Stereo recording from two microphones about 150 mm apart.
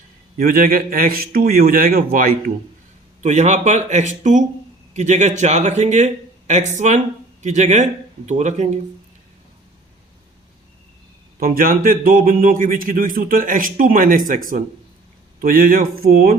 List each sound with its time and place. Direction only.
0.3 s speech: 75° right (ahead or behind)
3.2 s speech: 50° right (ahead or behind)
11.3 s speech: 70° right (ahead or behind)
15.4 s speech: 75° right (ahead or behind)